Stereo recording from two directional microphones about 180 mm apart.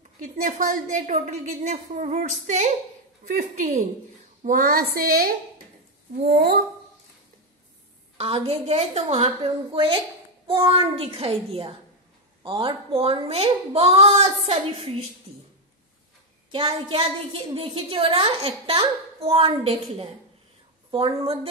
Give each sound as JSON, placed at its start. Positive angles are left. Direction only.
{"t": 0.2, "sound": "a woman's voice", "side_deg": -50}
{"t": 8.2, "sound": "a woman's voice", "side_deg": -30}
{"t": 9.2, "sound": "a woman's voice", "side_deg": -25}
{"t": 12.4, "sound": "a woman's voice", "side_deg": -30}
{"t": 16.5, "sound": "a woman's voice", "side_deg": -25}